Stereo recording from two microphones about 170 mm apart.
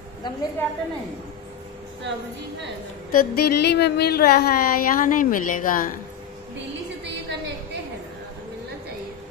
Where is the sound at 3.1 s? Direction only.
65° left (ahead or behind).